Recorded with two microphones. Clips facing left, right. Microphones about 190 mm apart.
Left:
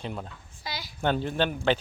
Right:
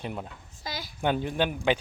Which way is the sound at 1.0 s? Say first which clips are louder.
Even; 10° right (ahead or behind).